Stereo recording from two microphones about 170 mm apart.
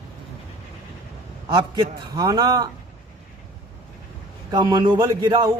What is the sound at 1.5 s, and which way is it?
A man's voice, 25° right (ahead or behind).